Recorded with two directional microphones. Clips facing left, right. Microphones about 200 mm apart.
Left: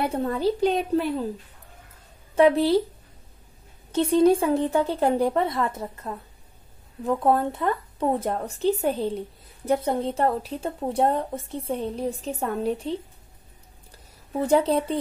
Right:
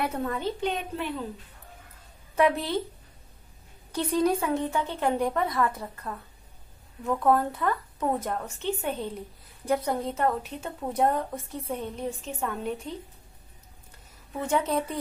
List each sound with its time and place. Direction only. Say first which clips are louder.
0.0 s a woman's voice: left 5 dB; 30° left (ahead or behind)
2.3 s a woman's voice: left 6 dB; 30° left (ahead or behind)
3.9 s a woman's voice: left 7 dB; 25° left (ahead or behind)
14.3 s a woman's voice: left 6 dB; 35° left (ahead or behind)